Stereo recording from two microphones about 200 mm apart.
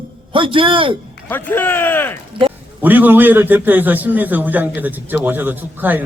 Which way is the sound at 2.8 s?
10° right (ahead or behind).